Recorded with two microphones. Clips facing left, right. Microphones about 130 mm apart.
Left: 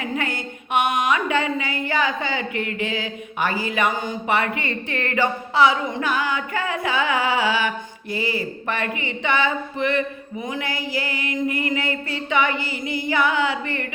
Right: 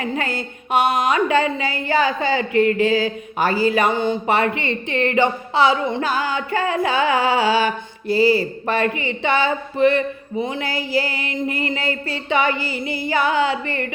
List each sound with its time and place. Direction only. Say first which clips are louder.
0.0 s a woman's voice: right 2 dB; 30° right (ahead or behind)